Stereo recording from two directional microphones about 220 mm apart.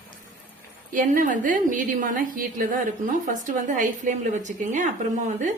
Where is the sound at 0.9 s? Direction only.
35° right (ahead or behind).